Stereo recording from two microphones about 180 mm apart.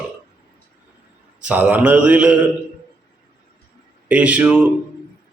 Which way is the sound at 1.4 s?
5° right (ahead or behind).